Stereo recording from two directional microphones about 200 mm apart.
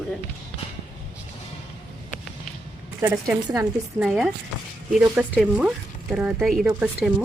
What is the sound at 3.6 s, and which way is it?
Speech, 5° right (ahead or behind).